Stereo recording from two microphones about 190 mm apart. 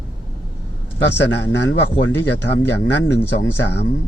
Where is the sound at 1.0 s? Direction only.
70° left (ahead or behind).